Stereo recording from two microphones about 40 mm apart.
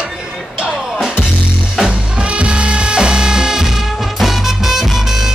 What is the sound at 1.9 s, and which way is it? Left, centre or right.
Music, right.